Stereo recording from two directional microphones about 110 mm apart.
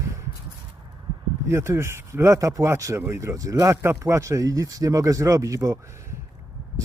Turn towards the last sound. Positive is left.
turn(degrees=-30)  # may be behind; listen again after turning